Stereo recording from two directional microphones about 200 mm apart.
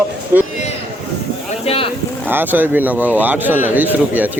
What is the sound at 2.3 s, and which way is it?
Speech, 10° right (ahead or behind).